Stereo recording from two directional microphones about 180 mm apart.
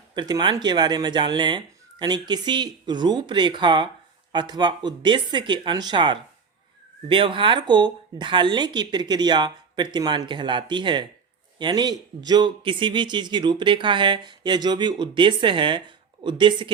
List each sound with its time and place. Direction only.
0.2 s speech: 25° right (ahead or behind)